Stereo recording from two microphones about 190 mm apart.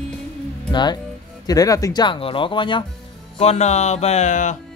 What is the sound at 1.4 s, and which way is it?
Speech, 20° left (ahead or behind).